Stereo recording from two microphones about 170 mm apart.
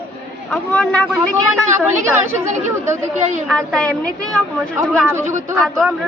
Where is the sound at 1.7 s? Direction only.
15° right (ahead or behind).